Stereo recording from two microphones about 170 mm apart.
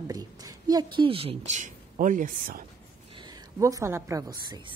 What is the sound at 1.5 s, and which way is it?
Speech, 45° right (ahead or behind).